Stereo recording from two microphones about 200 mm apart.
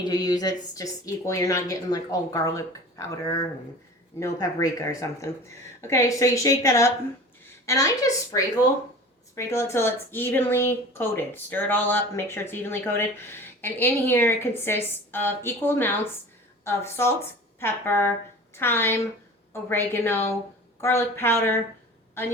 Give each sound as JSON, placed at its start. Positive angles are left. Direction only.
{"t": 0.0, "sound": "a woman's voice", "side_deg": 20}